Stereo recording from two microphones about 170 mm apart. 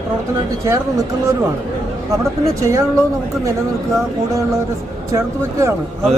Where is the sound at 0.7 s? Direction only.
15° right (ahead or behind).